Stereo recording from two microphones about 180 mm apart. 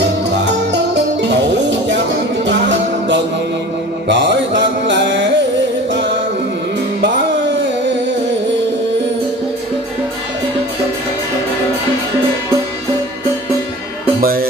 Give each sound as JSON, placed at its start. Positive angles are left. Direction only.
{"t": 0.0, "sound": "music", "side_deg": -75}
{"t": 4.1, "sound": "mantra", "side_deg": -80}